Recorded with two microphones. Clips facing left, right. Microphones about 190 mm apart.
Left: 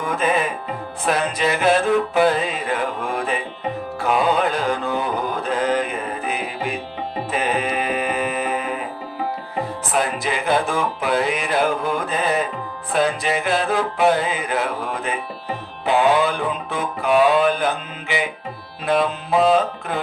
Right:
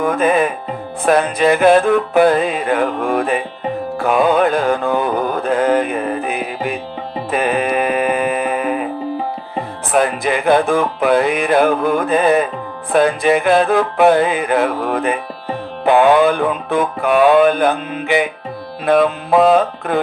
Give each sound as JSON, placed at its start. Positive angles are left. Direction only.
{"t": 0.0, "sound": "music", "side_deg": -55}
{"t": 9.9, "sound": "music", "side_deg": -55}